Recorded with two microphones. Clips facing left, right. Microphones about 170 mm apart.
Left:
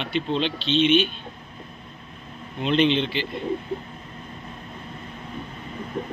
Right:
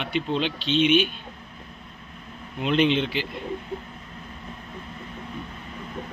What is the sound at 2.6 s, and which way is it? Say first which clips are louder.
Speech: left 1 dB; 5° right (ahead or behind).